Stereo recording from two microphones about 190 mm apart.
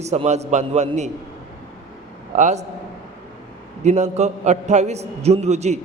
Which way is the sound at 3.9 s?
40° right (ahead or behind).